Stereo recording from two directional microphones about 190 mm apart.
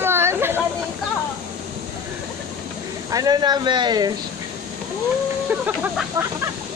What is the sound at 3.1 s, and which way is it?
Speech, 20° right (ahead or behind).